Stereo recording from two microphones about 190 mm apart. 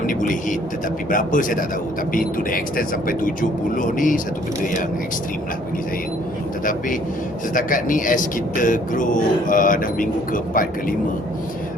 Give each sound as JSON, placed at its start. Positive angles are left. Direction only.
{"t": 0.0, "sound": "vehicle", "side_deg": 45}
{"t": 1.1, "sound": "speech", "side_deg": 45}
{"t": 6.7, "sound": "speech", "side_deg": 45}